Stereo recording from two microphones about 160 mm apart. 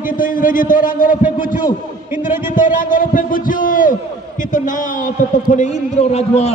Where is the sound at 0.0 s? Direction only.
60° left (ahead or behind).